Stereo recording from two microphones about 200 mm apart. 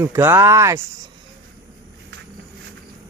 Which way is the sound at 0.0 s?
15° right (ahead or behind).